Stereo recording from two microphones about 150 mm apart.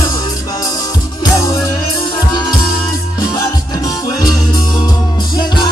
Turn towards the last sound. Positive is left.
turn(degrees=30)  # may be behind; listen again after turning